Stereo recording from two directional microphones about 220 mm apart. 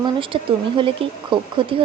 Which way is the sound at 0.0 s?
25° right (ahead or behind).